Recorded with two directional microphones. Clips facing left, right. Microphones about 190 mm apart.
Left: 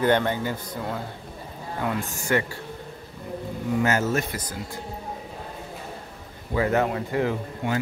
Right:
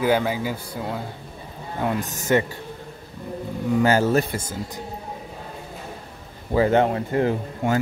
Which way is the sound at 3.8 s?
30° right (ahead or behind).